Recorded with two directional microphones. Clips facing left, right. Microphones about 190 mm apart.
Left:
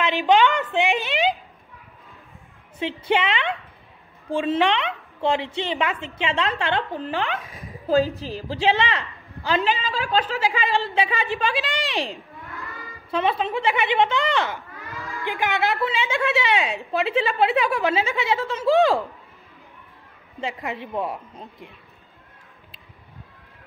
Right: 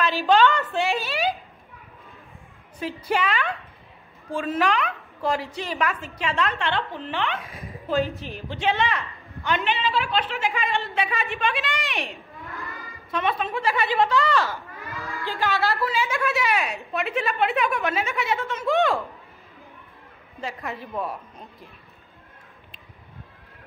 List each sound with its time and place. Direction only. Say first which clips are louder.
0.0 s a sound: left 1 dB; 20° left (ahead or behind)
3.1 s a woman's voice: left 2 dB; 25° left (ahead or behind)
7.8 s a woman's voice: left 5 dB; 35° left (ahead or behind)
20.8 s a woman's voice: left 3 dB; 25° left (ahead or behind)